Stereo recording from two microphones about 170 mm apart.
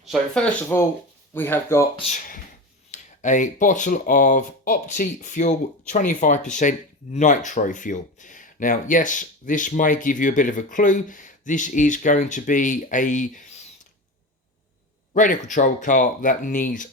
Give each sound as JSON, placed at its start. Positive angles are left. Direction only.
{"t": 0.0, "sound": "speech", "side_deg": 0}
{"t": 0.7, "sound": "speech", "side_deg": 15}
{"t": 2.1, "sound": "speech", "side_deg": 55}
{"t": 15.1, "sound": "speech", "side_deg": 50}